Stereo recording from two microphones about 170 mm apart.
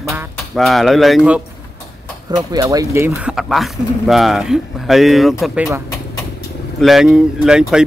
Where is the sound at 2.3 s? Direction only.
20° right (ahead or behind).